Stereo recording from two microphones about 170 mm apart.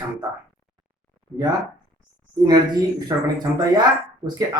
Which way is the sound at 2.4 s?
25° right (ahead or behind).